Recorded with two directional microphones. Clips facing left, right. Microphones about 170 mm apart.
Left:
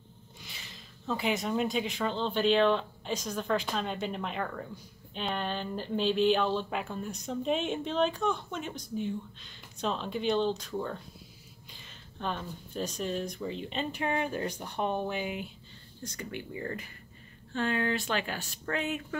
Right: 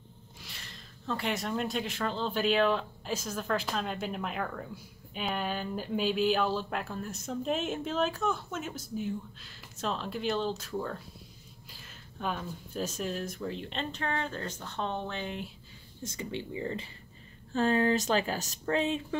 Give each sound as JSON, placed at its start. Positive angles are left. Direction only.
{"t": 0.4, "sound": "speech", "side_deg": 0}
{"t": 16.0, "sound": "speech", "side_deg": -25}
{"t": 17.6, "sound": "speech", "side_deg": -35}